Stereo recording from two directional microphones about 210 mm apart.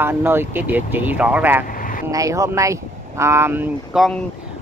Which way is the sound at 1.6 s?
40° left (ahead or behind).